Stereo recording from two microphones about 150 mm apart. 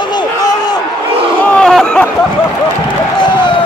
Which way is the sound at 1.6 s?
Centre (ahead or behind).